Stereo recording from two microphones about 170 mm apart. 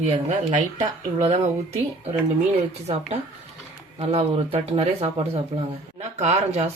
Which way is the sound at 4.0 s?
40° right (ahead or behind).